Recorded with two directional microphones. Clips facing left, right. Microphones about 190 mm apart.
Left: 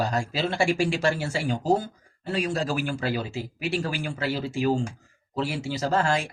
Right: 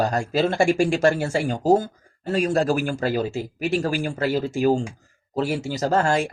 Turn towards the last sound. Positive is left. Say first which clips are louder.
# right 4 dB
turn(degrees=-45)  # may be behind; listen again after turning